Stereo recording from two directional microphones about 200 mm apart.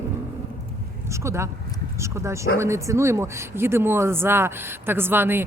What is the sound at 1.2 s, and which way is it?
Speech, 15° right (ahead or behind).